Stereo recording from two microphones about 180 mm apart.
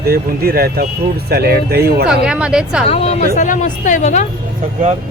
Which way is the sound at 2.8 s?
35° left (ahead or behind).